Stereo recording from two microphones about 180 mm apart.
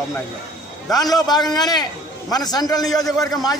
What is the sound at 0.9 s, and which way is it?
A man's voice, 20° left (ahead or behind).